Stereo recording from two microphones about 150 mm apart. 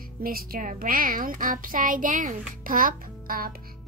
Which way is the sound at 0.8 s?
65° right (ahead or behind).